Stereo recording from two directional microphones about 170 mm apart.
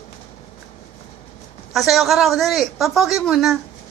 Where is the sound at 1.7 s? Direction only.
Centre (ahead or behind).